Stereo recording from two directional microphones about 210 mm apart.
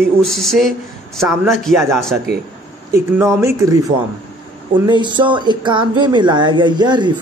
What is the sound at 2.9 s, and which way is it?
Speech, 15° right (ahead or behind).